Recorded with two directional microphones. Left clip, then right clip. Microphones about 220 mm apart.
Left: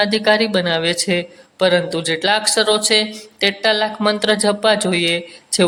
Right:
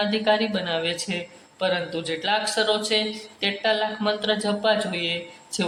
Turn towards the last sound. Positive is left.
turn(degrees=30)  # may be behind; listen again after turning